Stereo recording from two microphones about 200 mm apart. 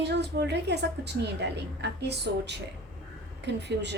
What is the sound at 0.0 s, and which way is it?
A woman's voice, 55° right (ahead or behind).